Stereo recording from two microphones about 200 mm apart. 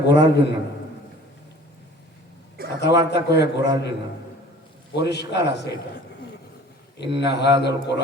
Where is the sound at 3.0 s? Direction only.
55° left (ahead or behind).